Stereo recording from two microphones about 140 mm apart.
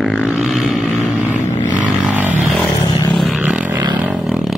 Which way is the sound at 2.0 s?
15° right (ahead or behind).